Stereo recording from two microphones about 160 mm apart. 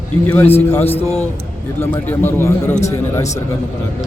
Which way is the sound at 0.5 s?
15° left (ahead or behind).